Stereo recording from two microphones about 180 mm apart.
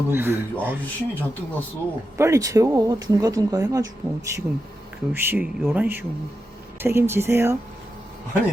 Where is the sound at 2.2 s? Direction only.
15° right (ahead or behind).